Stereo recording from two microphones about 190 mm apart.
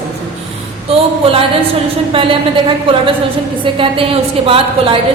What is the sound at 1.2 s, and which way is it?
Speech, 30° right (ahead or behind).